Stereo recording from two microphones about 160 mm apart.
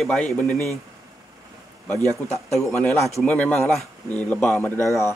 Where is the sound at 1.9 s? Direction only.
20° right (ahead or behind).